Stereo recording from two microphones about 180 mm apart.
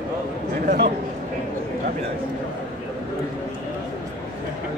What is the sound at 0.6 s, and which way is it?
Speech, 60° right (ahead or behind).